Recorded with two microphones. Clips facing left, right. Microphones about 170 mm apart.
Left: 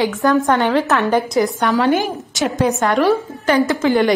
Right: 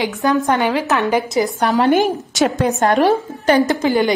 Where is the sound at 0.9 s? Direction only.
5° right (ahead or behind).